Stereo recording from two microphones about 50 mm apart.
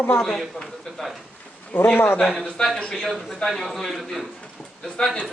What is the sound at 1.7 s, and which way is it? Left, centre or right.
Speech, left.